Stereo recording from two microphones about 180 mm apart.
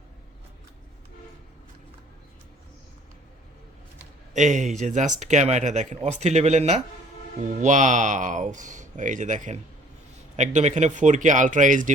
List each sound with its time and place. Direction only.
4.4 s speech: 45° right (ahead or behind)